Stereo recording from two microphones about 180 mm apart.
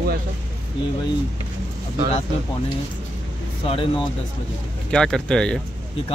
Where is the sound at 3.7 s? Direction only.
30° left (ahead or behind).